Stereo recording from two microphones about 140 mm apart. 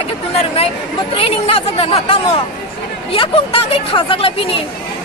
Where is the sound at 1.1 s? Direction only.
45° left (ahead or behind).